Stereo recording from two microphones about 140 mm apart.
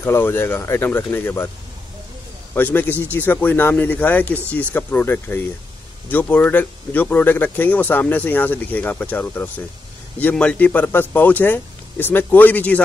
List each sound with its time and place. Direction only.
0.0 s speech: 15° left (ahead or behind)
2.5 s speech: 15° left (ahead or behind)